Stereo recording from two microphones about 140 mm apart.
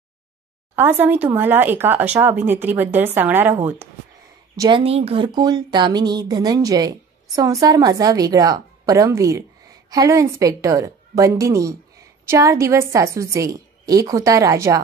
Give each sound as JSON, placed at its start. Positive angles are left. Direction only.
{"t": 0.7, "sound": "speech", "side_deg": -15}
{"t": 4.6, "sound": "speech", "side_deg": -35}